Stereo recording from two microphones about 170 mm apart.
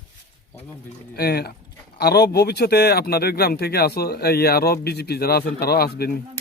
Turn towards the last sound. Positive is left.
turn(degrees=65)  # may be behind; listen again after turning